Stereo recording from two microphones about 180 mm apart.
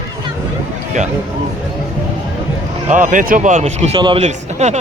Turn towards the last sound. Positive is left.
turn(degrees=-40)  # may be behind; listen again after turning